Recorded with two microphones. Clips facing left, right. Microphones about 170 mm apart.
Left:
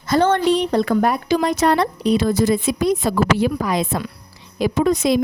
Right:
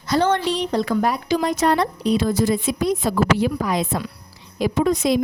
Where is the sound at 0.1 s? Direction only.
50° left (ahead or behind).